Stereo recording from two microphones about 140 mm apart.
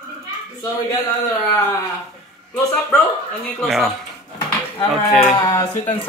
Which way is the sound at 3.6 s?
Centre (ahead or behind).